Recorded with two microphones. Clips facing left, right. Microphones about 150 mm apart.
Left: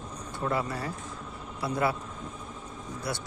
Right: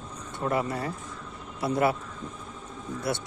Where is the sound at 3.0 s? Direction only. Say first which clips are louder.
Right 4 dB; 25° right (ahead or behind).